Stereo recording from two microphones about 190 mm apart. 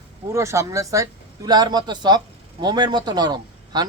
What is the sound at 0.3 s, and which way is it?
Speech, 15° right (ahead or behind).